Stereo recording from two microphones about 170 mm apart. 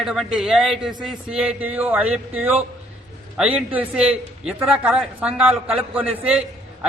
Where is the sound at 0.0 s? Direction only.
Centre (ahead or behind).